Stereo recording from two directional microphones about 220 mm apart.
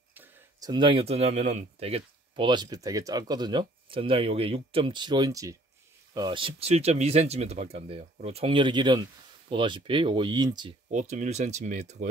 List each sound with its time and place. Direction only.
0.1 s speech: 10° right (ahead or behind)
10.9 s speech: 35° right (ahead or behind)